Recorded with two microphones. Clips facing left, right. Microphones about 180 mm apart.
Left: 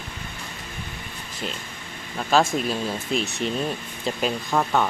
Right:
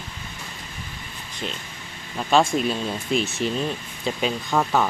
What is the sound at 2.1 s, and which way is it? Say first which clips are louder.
Speech: right 1 dB; centre (ahead or behind).